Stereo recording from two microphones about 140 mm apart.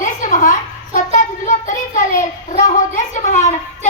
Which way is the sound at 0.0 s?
65° left (ahead or behind).